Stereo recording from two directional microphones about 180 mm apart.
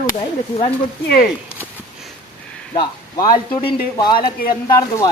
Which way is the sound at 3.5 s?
25° left (ahead or behind).